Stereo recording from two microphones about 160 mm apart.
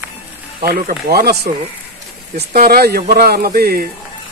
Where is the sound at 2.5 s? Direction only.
65° right (ahead or behind).